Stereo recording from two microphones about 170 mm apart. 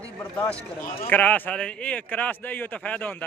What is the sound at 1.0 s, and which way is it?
A man's voice, 10° left (ahead or behind).